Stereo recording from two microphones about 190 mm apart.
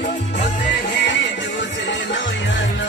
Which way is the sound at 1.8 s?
70° left (ahead or behind).